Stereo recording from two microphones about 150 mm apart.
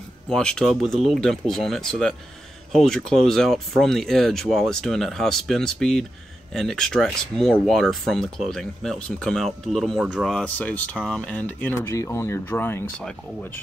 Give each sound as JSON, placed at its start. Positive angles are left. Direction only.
{"t": 0.3, "sound": "speech", "side_deg": 5}